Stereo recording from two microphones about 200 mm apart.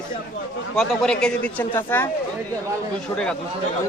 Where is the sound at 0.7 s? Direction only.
Centre (ahead or behind).